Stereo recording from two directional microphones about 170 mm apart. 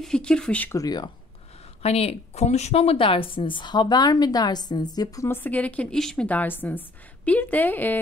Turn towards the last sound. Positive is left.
turn(degrees=10)  # may be behind; listen again after turning